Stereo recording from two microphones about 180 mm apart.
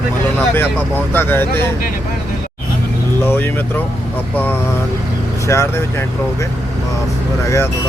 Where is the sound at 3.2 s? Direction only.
10° left (ahead or behind).